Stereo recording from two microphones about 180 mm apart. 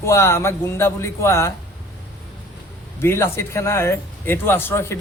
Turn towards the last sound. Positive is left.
turn(degrees=15)  # may be behind; listen again after turning